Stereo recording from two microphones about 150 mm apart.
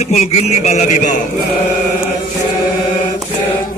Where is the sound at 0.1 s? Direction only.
45° left (ahead or behind).